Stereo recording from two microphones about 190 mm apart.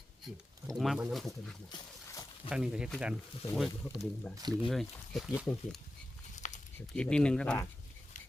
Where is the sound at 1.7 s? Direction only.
20° left (ahead or behind).